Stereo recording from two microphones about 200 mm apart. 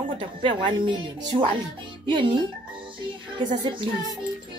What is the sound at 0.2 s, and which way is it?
A woman's voice, 25° right (ahead or behind).